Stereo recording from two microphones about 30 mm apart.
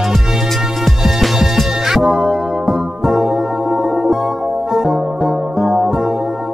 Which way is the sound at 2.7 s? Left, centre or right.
Centre.